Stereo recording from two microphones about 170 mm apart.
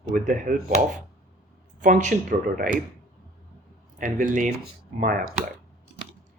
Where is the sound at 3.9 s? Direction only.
50° right (ahead or behind).